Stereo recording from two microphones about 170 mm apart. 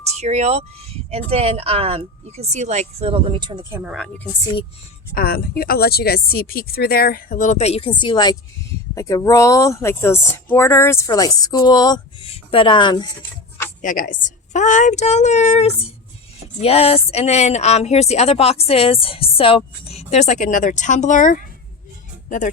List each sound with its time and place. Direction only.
0.1 s speech: 40° right (ahead or behind); by 3.9 s 15° right (ahead or behind)
3.9 s a woman's voice: 5° left (ahead or behind)
5.1 s speech: 60° left (ahead or behind); by 13.1 s 25° left (ahead or behind)
13.8 s a woman's voice: 50° left (ahead or behind)